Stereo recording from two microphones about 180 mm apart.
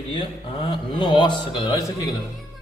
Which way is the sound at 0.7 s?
25° left (ahead or behind).